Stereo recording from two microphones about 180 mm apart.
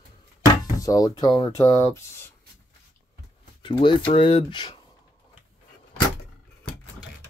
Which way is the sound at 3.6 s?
25° left (ahead or behind).